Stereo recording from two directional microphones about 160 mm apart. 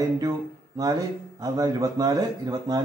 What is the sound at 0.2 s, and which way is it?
Speech, 20° right (ahead or behind).